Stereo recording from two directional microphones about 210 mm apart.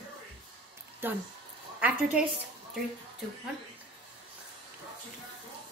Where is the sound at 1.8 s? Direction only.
5° right (ahead or behind).